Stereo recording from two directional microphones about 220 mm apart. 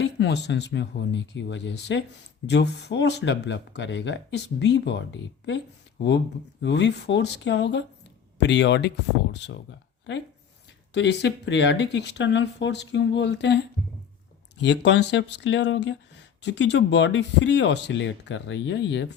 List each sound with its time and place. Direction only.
0.0 s speech: 50° left (ahead or behind)
10.9 s speech: 50° left (ahead or behind)